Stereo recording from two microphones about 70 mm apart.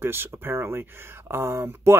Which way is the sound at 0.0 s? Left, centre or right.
Right.